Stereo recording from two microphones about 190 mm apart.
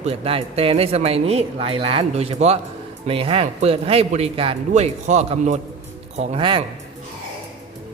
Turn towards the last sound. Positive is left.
turn(degrees=-25)  # may be behind; listen again after turning